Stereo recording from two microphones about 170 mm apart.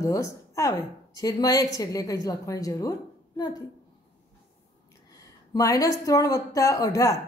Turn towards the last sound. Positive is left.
turn(degrees=20)  # may be behind; listen again after turning